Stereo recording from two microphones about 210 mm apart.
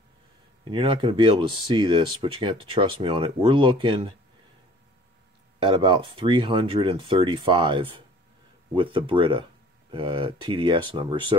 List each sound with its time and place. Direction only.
0.7 s speech: 25° right (ahead or behind)
5.6 s speech: 25° right (ahead or behind)